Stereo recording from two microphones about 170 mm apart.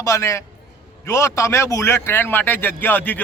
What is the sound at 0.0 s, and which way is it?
A man's voice, 15° left (ahead or behind).